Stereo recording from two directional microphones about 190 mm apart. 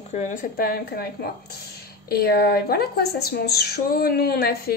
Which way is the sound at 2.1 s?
55° left (ahead or behind).